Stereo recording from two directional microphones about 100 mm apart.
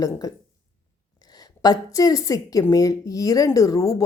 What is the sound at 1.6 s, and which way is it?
Speech, 40° left (ahead or behind).